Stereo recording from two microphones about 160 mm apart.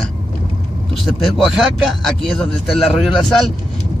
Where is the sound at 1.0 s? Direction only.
Centre (ahead or behind).